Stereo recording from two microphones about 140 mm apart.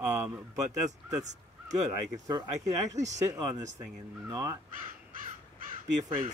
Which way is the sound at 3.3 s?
25° right (ahead or behind).